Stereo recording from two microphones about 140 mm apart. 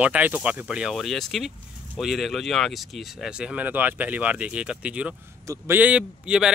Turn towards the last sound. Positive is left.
turn(degrees=-5)  # may be behind; listen again after turning